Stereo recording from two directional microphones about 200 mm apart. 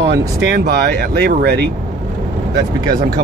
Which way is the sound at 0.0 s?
55° right (ahead or behind).